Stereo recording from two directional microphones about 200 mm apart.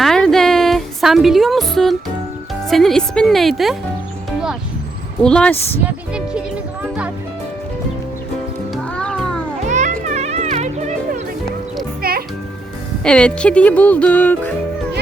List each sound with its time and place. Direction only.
0.0 s music: centre (ahead or behind)
2.6 s speech: centre (ahead or behind)
4.3 s music: 5° right (ahead or behind)
5.2 s speech: 5° left (ahead or behind)
8.7 s music: 5° left (ahead or behind)
9.6 s music: 35° right (ahead or behind)
12.0 s music: 50° right (ahead or behind)
13.1 s music: 5° left (ahead or behind)